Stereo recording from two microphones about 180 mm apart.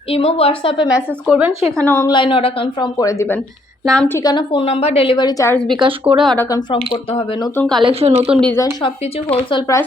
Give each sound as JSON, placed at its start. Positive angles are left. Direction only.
{"t": 0.1, "sound": "a woman's voice", "side_deg": 30}
{"t": 0.9, "sound": "speech", "side_deg": -5}
{"t": 1.7, "sound": "speech", "side_deg": 10}
{"t": 2.0, "sound": "a woman's voice", "side_deg": 25}
{"t": 3.8, "sound": "a woman's voice", "side_deg": 5}
{"t": 4.2, "sound": "a woman's voice", "side_deg": 25}
{"t": 5.6, "sound": "speech", "side_deg": -25}
{"t": 6.2, "sound": "speech", "side_deg": 10}
{"t": 6.7, "sound": "a woman's voice", "side_deg": 30}
{"t": 7.5, "sound": "a woman's voice", "side_deg": 5}
{"t": 7.8, "sound": "a woman's voice", "side_deg": -30}
{"t": 8.3, "sound": "a woman's voice", "side_deg": 5}
{"t": 8.5, "sound": "a woman's voice", "side_deg": 20}